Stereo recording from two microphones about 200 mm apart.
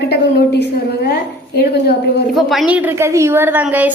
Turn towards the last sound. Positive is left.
turn(degrees=-10)  # may be behind; listen again after turning